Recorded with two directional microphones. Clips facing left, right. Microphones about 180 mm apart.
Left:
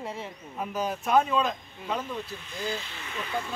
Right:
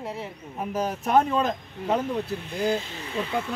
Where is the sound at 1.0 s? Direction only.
45° right (ahead or behind).